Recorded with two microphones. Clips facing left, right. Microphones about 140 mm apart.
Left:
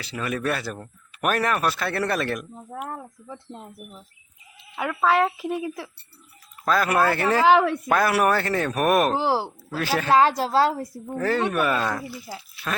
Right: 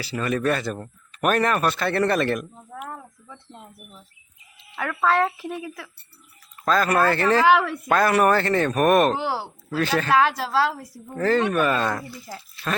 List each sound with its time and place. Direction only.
0.0 s speech: centre (ahead or behind)
2.8 s a woman's voice: 35° left (ahead or behind)
4.8 s speech: 10° left (ahead or behind)
5.6 s speech: 25° left (ahead or behind)
6.7 s speech: 10° left (ahead or behind)
9.1 s a woman's voice: 35° left (ahead or behind)
9.6 s a woman's voice: 10° left (ahead or behind)
10.1 s a woman's voice: 35° left (ahead or behind)
11.1 s speech: 5° left (ahead or behind)